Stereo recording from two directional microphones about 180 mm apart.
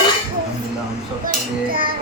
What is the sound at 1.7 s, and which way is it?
Music, 50° right (ahead or behind).